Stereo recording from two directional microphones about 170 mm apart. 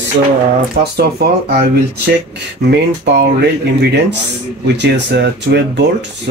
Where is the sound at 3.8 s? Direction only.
75° right (ahead or behind).